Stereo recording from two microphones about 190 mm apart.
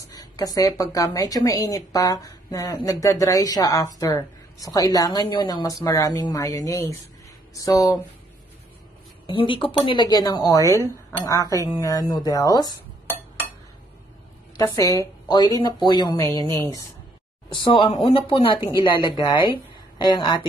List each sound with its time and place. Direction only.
0.1 s speech: 20° left (ahead or behind)
9.2 s a woman's voice: 25° left (ahead or behind)
14.6 s speech: 15° left (ahead or behind)
17.6 s speech: 25° left (ahead or behind)